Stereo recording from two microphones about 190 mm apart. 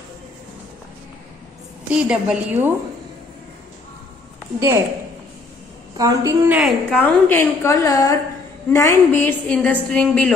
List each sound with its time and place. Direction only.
1.9 s a woman's voice: 5° right (ahead or behind)
4.6 s a woman's voice: 15° right (ahead or behind)
5.9 s a woman's voice: 15° right (ahead or behind)
6.6 s a woman's voice: 5° left (ahead or behind)